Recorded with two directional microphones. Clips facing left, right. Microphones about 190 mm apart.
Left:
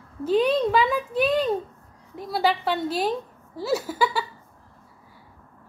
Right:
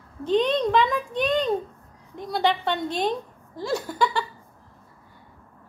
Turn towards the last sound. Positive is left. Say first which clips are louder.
# even
turn(degrees=5)  # may be behind; listen again after turning